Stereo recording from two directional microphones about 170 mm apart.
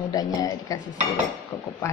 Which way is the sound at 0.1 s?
20° left (ahead or behind).